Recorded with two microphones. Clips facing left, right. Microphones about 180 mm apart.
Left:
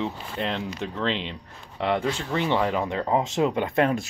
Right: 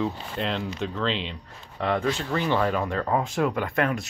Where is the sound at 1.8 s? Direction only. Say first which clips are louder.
Even; 25° left (ahead or behind).